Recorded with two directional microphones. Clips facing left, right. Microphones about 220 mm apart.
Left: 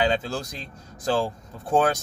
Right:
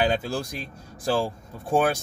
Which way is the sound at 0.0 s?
10° right (ahead or behind).